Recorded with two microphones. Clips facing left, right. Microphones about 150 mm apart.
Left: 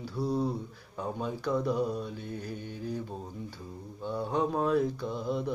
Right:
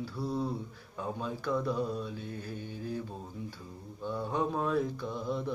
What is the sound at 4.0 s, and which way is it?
Mantra, 15° left (ahead or behind).